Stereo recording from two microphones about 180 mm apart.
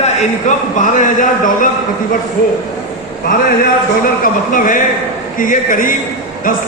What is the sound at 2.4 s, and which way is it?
Speech, 55° left (ahead or behind).